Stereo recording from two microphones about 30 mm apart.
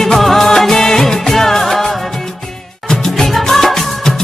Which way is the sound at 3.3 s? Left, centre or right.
Centre.